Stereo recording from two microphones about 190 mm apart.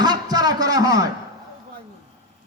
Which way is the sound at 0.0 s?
20° right (ahead or behind).